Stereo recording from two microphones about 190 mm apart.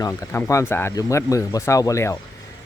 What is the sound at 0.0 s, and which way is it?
Speech, 15° left (ahead or behind).